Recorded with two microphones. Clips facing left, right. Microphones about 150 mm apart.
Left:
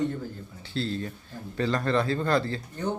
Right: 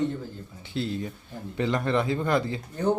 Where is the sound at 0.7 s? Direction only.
15° right (ahead or behind).